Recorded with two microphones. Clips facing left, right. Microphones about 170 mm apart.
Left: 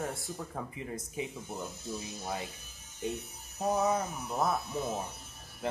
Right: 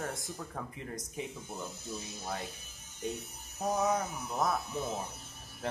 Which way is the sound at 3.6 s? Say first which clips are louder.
Left 1 dB; centre (ahead or behind).